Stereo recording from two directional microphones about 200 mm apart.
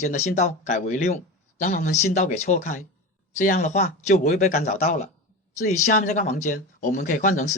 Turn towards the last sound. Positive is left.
turn(degrees=40)  # may be behind; listen again after turning